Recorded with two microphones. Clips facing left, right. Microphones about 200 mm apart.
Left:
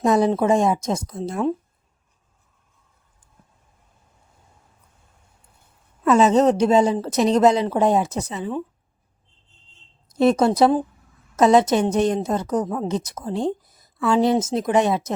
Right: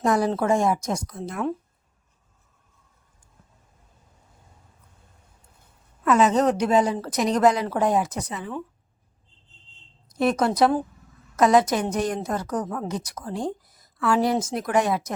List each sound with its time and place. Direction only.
0.0 s a woman's voice: 20° left (ahead or behind)
6.1 s a woman's voice: 25° left (ahead or behind)
10.1 s a woman's voice: 25° left (ahead or behind)